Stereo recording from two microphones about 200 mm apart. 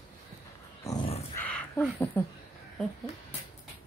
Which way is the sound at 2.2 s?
10° left (ahead or behind).